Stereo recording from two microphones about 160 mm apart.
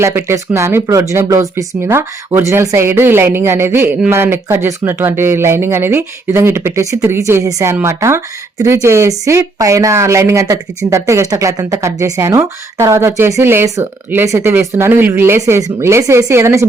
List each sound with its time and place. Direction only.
0.0 s speech: 15° right (ahead or behind)